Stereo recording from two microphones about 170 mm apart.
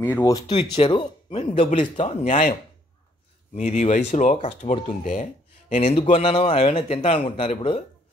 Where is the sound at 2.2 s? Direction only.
45° left (ahead or behind).